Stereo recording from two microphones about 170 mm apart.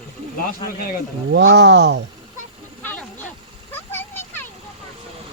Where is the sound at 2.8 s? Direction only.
10° left (ahead or behind).